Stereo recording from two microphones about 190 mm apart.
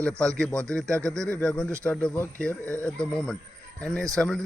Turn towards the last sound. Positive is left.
turn(degrees=5)  # may be behind; listen again after turning